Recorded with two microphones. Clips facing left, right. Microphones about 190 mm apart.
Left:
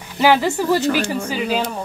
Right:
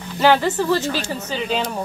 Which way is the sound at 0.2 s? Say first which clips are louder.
Left 1 dB; 10° left (ahead or behind).